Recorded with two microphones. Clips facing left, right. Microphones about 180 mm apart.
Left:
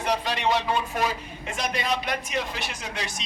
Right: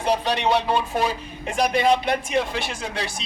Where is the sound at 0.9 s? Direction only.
30° right (ahead or behind).